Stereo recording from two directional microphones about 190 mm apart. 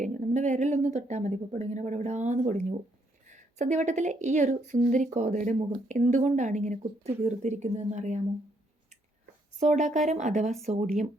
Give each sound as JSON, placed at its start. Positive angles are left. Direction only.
{"t": 0.0, "sound": "a sound", "side_deg": -40}
{"t": 0.9, "sound": "a woman's voice", "side_deg": -35}
{"t": 9.6, "sound": "a woman's voice", "side_deg": -40}